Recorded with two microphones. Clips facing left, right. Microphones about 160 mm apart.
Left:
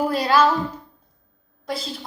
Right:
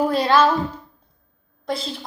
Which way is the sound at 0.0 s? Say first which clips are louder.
Right 2 dB; 10° left (ahead or behind).